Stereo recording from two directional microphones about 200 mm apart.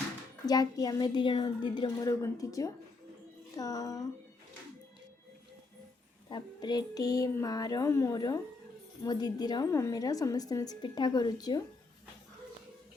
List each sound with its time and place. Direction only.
0.4 s a woman's voice: 20° left (ahead or behind)
6.3 s a woman's voice: 20° left (ahead or behind)